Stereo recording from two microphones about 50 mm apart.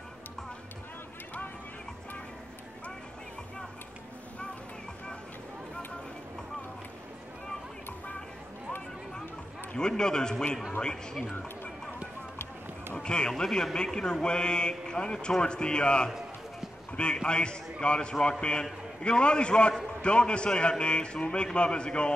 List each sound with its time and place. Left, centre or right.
9.8 s speech: centre
12.9 s a man's voice: centre